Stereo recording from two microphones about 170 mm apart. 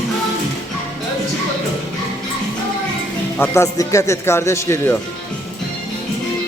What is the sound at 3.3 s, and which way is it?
Speech, 15° left (ahead or behind).